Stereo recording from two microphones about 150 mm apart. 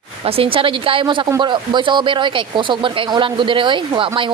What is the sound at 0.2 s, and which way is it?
Speech, 40° right (ahead or behind).